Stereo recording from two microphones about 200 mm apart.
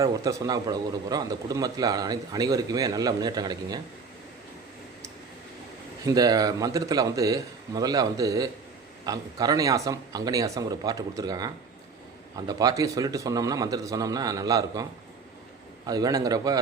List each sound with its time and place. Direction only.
0.0 s a man's voice: 15° right (ahead or behind)
6.1 s speech: 20° right (ahead or behind)
15.9 s a man's voice: 20° right (ahead or behind)